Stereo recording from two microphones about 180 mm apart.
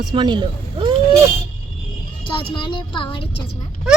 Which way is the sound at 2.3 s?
30° left (ahead or behind).